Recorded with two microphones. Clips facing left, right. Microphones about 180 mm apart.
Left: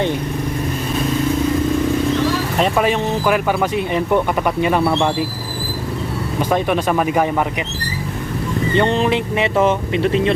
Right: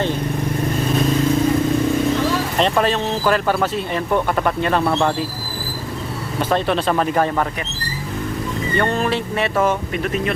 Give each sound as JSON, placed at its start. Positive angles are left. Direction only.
{"t": 2.6, "sound": "speech", "side_deg": 10}
{"t": 6.5, "sound": "speech", "side_deg": 10}
{"t": 8.7, "sound": "speech", "side_deg": 20}